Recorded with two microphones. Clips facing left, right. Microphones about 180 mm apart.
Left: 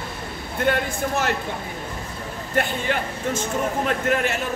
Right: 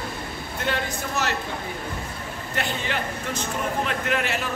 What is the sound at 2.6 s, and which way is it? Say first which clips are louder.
Speech: left 5 dB; 50° left (ahead or behind).